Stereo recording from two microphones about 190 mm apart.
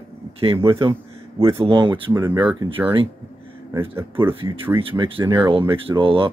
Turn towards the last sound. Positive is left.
turn(degrees=-25)  # may be behind; listen again after turning